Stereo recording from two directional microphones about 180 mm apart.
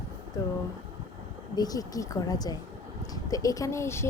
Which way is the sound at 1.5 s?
20° left (ahead or behind).